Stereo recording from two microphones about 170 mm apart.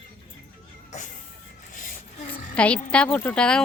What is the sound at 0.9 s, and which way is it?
Music, 45° left (ahead or behind).